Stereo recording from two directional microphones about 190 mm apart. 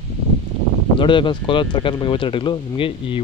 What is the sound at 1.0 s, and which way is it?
Speech, 25° left (ahead or behind).